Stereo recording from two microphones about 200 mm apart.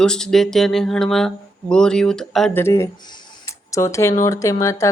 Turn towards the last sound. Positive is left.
turn(degrees=15)  # may be behind; listen again after turning